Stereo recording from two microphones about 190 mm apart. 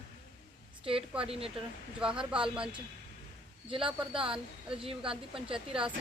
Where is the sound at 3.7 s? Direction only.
25° right (ahead or behind).